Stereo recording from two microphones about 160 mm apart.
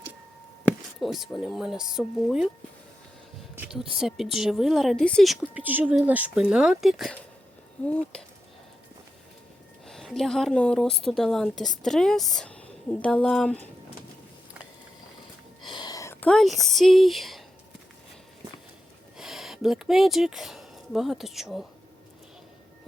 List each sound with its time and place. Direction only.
1.0 s speech: centre (ahead or behind)
3.7 s speech: 5° right (ahead or behind)
9.8 s speech: centre (ahead or behind)
15.7 s a sound: 25° left (ahead or behind)
16.2 s speech: centre (ahead or behind)
19.1 s speech: 5° right (ahead or behind)